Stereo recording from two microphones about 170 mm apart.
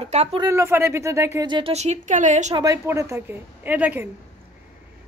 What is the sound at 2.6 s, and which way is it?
A woman's voice, 20° right (ahead or behind).